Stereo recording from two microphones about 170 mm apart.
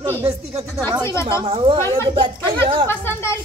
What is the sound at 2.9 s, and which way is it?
Speech, 15° left (ahead or behind).